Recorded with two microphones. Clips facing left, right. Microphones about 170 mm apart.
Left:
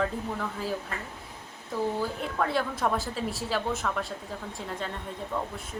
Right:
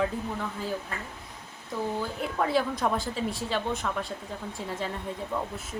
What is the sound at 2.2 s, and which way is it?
A woman's voice, 5° right (ahead or behind).